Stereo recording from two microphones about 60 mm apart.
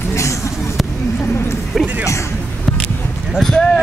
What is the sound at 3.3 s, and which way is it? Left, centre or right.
Speech, centre.